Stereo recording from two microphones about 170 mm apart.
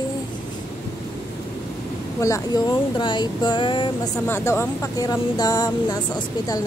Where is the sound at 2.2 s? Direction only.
20° left (ahead or behind).